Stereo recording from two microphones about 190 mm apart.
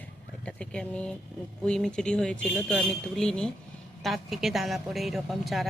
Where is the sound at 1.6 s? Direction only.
5° left (ahead or behind).